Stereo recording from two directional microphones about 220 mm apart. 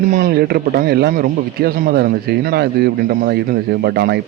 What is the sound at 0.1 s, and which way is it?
A man's voice, 40° right (ahead or behind).